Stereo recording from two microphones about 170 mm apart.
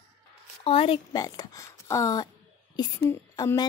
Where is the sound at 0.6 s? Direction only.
35° left (ahead or behind).